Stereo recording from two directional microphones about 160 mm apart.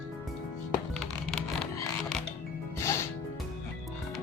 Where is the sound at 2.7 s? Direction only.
15° left (ahead or behind).